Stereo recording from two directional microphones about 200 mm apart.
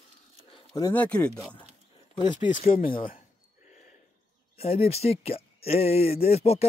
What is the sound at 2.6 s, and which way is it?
Speech, 40° left (ahead or behind).